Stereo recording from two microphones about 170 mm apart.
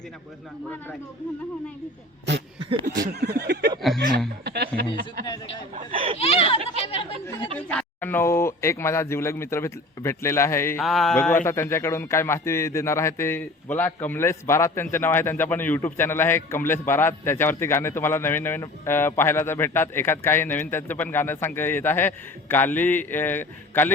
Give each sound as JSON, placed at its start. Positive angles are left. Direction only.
{"t": 3.1, "sound": "a sound", "side_deg": -70}
{"t": 3.8, "sound": "speech", "side_deg": 0}
{"t": 4.4, "sound": "a sound", "side_deg": -75}
{"t": 5.9, "sound": "speech", "side_deg": -30}
{"t": 6.1, "sound": "a child's voice", "side_deg": 35}
{"t": 7.5, "sound": "a man's voice", "side_deg": 5}
{"t": 10.8, "sound": "a man's voice", "side_deg": 0}